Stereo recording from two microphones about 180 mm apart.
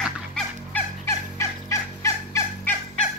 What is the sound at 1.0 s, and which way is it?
Turkey, 15° left (ahead or behind).